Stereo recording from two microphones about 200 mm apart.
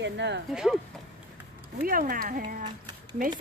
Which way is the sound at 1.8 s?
45° right (ahead or behind).